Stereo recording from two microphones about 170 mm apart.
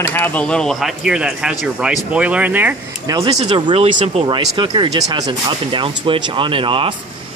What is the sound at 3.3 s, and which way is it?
Speech, 40° right (ahead or behind).